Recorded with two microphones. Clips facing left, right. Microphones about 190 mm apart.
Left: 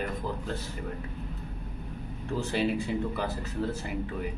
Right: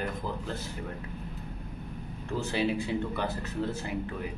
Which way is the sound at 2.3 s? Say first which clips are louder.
Left 1 dB; centre (ahead or behind).